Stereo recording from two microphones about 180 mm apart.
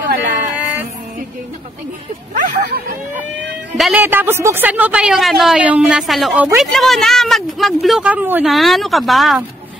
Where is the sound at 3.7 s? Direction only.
Centre (ahead or behind).